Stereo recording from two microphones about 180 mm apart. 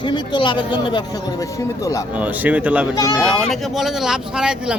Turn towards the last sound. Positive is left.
turn(degrees=-5)  # may be behind; listen again after turning